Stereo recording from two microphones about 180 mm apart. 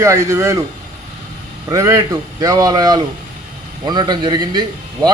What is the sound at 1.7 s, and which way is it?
Speech, 20° right (ahead or behind).